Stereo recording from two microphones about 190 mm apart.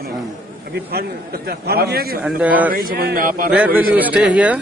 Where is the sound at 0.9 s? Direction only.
55° right (ahead or behind).